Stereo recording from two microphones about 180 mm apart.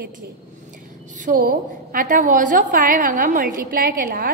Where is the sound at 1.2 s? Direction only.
50° right (ahead or behind).